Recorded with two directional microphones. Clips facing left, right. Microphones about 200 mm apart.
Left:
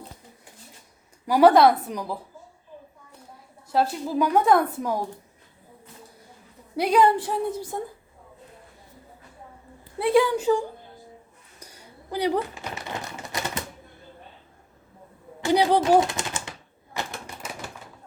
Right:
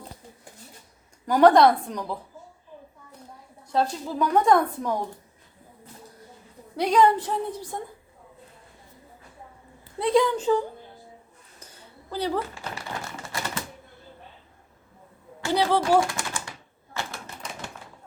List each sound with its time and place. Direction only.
1.3 s a woman's voice: 5° left (ahead or behind)
3.7 s a woman's voice: 10° left (ahead or behind)
6.7 s a woman's voice: 10° left (ahead or behind)
10.0 s a woman's voice: 5° left (ahead or behind)
11.6 s typewriter: 10° left (ahead or behind)
15.4 s typewriter: 15° left (ahead or behind)